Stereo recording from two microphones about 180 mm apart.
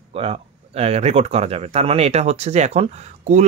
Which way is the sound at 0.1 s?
30° right (ahead or behind).